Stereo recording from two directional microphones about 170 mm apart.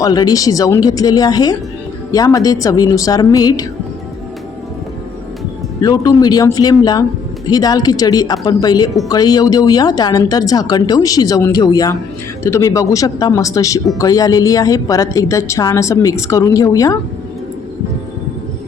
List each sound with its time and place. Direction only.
0.0 s a woman's voice: 25° left (ahead or behind)
5.8 s a woman's voice: 20° left (ahead or behind)